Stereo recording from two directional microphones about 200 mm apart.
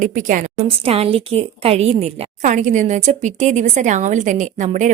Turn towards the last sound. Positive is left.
turn(degrees=-35)  # may be behind; listen again after turning